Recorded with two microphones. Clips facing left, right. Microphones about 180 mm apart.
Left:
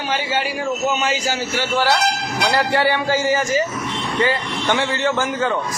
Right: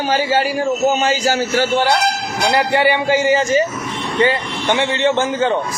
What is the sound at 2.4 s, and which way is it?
A man's voice, 20° right (ahead or behind).